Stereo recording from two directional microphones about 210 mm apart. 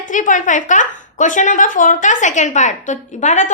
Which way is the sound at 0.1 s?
35° left (ahead or behind).